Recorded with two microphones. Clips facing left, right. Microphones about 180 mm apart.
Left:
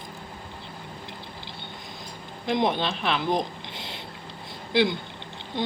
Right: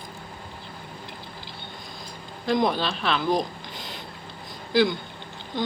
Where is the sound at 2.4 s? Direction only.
20° left (ahead or behind).